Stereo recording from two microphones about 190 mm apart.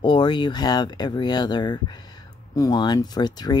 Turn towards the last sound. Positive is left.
turn(degrees=20)  # may be behind; listen again after turning